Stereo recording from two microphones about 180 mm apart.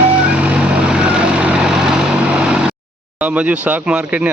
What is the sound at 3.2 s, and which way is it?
Speech, 5° right (ahead or behind).